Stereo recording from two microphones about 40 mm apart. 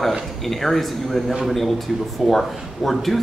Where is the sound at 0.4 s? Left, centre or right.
Centre.